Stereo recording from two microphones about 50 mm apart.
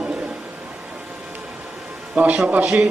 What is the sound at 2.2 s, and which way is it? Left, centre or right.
Speech, right.